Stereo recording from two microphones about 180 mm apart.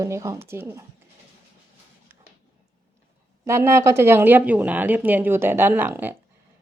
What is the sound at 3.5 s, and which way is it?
Speech, 15° right (ahead or behind).